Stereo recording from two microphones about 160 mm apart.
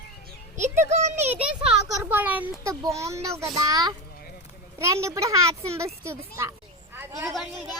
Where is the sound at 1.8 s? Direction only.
15° right (ahead or behind).